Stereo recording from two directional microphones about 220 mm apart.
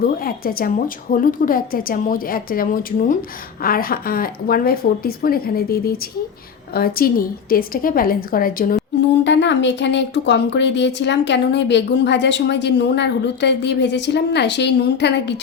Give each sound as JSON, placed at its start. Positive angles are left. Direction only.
{"t": 0.0, "sound": "a woman's voice", "side_deg": 40}
{"t": 9.2, "sound": "speech", "side_deg": 55}